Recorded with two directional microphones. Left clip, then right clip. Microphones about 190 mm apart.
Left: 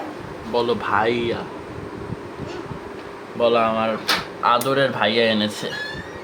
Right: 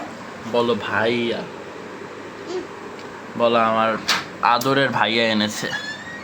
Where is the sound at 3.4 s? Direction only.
15° right (ahead or behind).